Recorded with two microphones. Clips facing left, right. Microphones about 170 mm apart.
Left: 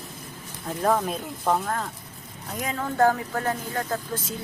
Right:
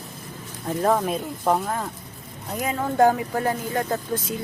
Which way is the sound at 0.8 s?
5° right (ahead or behind).